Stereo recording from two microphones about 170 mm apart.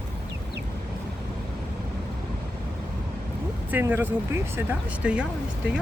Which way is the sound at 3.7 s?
10° right (ahead or behind).